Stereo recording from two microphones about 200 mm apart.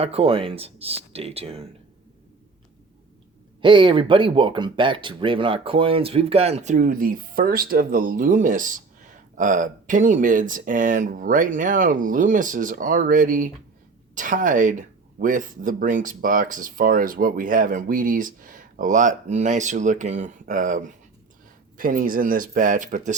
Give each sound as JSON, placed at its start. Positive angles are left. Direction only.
{"t": 0.0, "sound": "speech", "side_deg": -30}
{"t": 3.6, "sound": "speech", "side_deg": -25}